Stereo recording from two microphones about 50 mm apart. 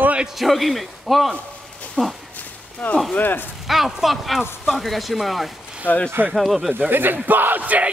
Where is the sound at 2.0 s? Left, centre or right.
Centre.